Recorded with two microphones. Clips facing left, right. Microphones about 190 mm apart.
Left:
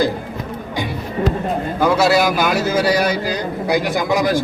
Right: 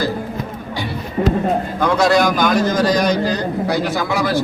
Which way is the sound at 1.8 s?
5° left (ahead or behind).